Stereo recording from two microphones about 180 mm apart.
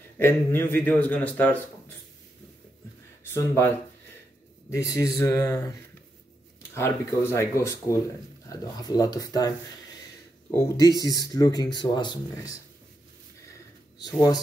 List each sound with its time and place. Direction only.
0.2 s speech: 10° left (ahead or behind)
3.3 s speech: 15° left (ahead or behind)
10.5 s speech: 15° left (ahead or behind)